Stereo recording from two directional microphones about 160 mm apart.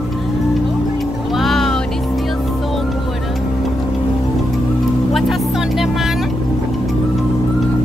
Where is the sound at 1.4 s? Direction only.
Centre (ahead or behind).